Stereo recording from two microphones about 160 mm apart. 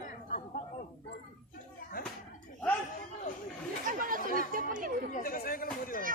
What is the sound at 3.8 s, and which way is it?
Chatter, 60° right (ahead or behind).